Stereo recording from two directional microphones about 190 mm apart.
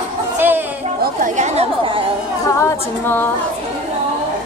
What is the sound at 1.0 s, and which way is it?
A woman's voice, 45° right (ahead or behind).